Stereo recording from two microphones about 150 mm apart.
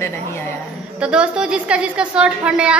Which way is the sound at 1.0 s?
5° right (ahead or behind).